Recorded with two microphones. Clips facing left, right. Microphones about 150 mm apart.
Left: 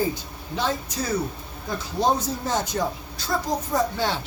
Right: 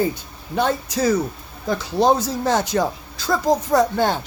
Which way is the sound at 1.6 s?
85° right.